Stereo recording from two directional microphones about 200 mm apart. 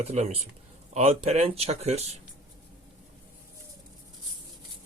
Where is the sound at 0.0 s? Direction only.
35° right (ahead or behind).